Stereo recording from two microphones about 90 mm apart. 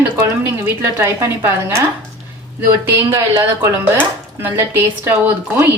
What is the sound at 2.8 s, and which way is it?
A woman's voice, 30° right (ahead or behind).